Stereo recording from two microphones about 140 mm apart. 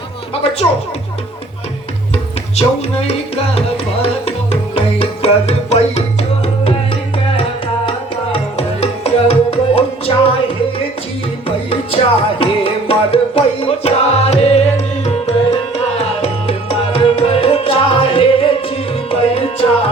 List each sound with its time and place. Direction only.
2.1 s music: 50° left (ahead or behind)
11.4 s music: 40° left (ahead or behind)